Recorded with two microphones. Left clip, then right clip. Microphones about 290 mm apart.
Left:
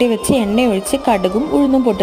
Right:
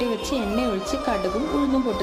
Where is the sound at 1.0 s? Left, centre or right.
Left.